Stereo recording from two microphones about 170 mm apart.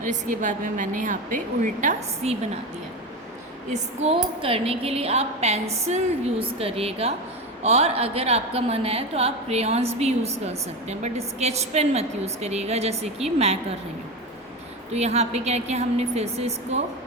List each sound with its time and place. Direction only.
0.1 s a woman's voice: 50° right (ahead or behind)
3.7 s a woman's voice: 35° right (ahead or behind)
14.9 s a woman's voice: 40° right (ahead or behind)